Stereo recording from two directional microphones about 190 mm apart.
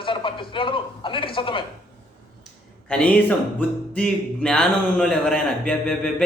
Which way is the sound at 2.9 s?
5° left (ahead or behind).